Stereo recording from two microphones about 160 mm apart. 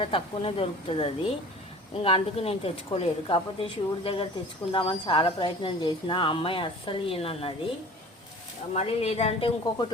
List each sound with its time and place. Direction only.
0.0 s speech: 35° left (ahead or behind)
8.7 s speech: 40° left (ahead or behind)